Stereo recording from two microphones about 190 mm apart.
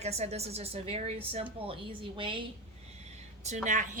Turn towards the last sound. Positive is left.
turn(degrees=-40)  # may be behind; listen again after turning